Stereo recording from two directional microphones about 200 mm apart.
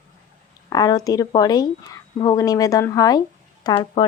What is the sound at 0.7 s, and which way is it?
A woman's voice, 20° left (ahead or behind).